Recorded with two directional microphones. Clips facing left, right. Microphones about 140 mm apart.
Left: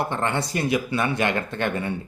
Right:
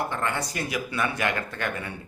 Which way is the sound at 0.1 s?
25° left (ahead or behind).